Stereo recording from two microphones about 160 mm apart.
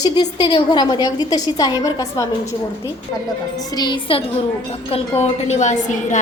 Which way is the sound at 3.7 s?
30° left (ahead or behind).